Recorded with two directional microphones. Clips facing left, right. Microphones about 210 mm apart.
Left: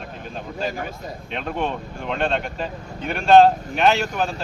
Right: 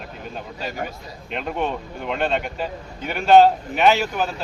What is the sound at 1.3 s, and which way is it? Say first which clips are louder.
Speech: right 1 dB; 5° right (ahead or behind).